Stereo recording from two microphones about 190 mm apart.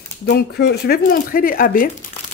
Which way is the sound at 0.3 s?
60° left (ahead or behind).